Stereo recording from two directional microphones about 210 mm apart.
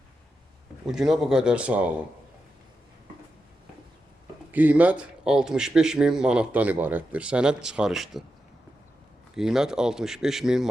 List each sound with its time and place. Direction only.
0.9 s a man's voice: centre (ahead or behind)
4.5 s a man's voice: 5° right (ahead or behind)
9.3 s a man's voice: centre (ahead or behind)